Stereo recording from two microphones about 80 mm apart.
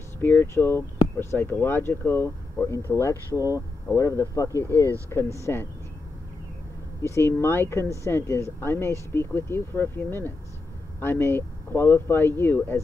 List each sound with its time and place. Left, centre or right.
0.2 s speech: left
7.2 s speech: left